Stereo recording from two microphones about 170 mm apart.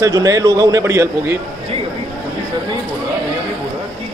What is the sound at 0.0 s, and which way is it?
A man's voice, 20° right (ahead or behind).